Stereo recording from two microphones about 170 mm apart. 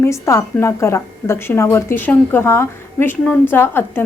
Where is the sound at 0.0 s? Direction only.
15° left (ahead or behind).